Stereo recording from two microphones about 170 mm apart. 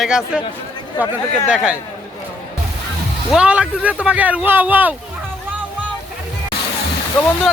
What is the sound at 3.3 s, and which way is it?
Speech, 5° right (ahead or behind).